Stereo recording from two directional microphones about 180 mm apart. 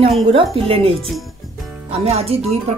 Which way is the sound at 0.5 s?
35° right (ahead or behind).